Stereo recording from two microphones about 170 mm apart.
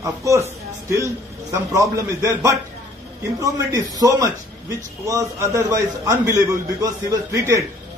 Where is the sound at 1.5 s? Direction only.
15° right (ahead or behind).